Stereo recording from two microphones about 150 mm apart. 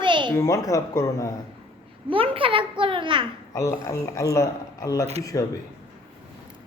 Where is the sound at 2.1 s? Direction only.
35° right (ahead or behind).